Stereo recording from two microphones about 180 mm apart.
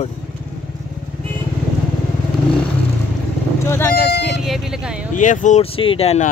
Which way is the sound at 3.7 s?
10° left (ahead or behind).